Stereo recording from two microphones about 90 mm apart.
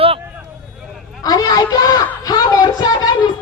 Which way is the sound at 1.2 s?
45° left (ahead or behind).